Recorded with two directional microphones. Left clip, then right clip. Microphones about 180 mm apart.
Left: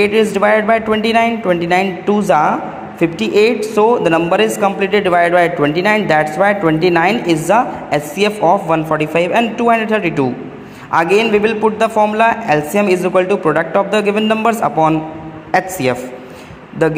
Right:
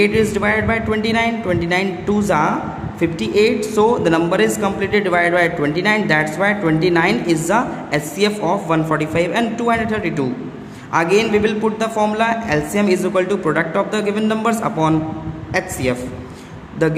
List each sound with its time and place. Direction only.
0.0 s a man's voice: 15° left (ahead or behind)